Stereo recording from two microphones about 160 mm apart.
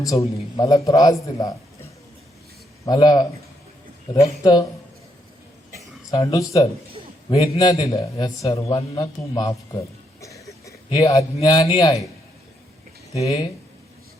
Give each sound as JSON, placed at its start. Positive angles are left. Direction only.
{"t": 0.1, "sound": "a man's voice", "side_deg": 20}
{"t": 6.1, "sound": "a man's voice", "side_deg": 20}
{"t": 7.3, "sound": "a man's voice", "side_deg": 35}
{"t": 10.2, "sound": "a sound", "side_deg": 20}
{"t": 10.8, "sound": "a man's voice", "side_deg": 30}
{"t": 13.1, "sound": "speech", "side_deg": 35}